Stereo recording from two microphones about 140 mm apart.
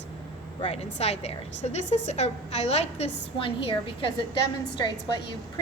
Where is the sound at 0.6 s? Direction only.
50° left (ahead or behind).